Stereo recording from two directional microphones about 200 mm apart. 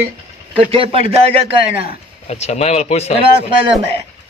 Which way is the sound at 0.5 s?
25° right (ahead or behind).